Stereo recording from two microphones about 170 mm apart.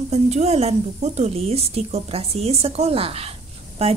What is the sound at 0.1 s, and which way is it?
Speech, 40° right (ahead or behind).